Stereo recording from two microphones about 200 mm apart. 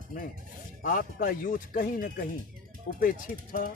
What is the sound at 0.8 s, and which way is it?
Speech, 45° left (ahead or behind).